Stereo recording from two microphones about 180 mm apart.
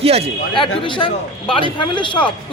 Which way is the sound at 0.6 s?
25° left (ahead or behind).